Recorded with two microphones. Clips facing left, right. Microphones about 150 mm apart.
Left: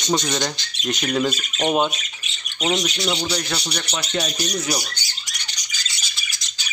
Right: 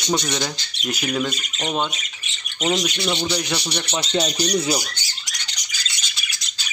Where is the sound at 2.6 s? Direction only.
Centre (ahead or behind).